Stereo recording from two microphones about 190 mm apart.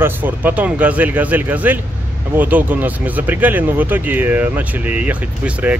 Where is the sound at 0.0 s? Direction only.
10° right (ahead or behind).